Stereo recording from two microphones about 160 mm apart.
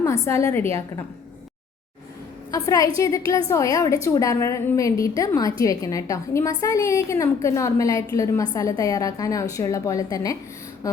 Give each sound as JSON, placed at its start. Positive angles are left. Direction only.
{"t": 0.0, "sound": "a woman's voice", "side_deg": 15}
{"t": 2.5, "sound": "a woman's voice", "side_deg": 20}